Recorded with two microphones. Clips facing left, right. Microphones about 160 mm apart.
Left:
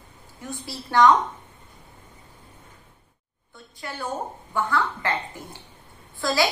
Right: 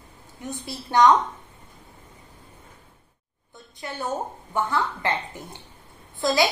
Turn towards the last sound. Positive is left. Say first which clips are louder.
# right 2 dB
turn(degrees=-20)  # may be behind; listen again after turning